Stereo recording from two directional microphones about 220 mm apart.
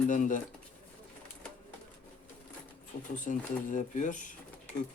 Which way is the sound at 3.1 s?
35° left (ahead or behind).